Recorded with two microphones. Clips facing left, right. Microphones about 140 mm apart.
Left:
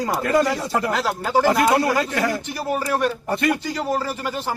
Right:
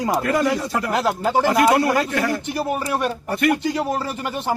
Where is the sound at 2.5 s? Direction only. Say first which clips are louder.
Even; 20° right (ahead or behind).